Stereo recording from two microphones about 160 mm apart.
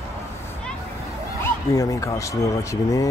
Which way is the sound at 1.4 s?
20° left (ahead or behind).